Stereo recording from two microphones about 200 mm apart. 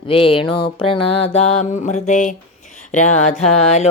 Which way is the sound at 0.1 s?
25° left (ahead or behind).